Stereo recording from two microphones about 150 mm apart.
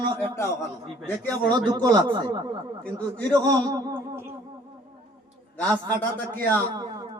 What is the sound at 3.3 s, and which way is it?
Speech, 25° right (ahead or behind).